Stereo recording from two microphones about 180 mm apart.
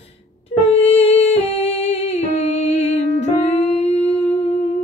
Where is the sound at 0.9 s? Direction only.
35° left (ahead or behind).